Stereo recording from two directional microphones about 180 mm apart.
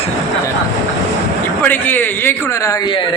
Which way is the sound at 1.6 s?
10° left (ahead or behind).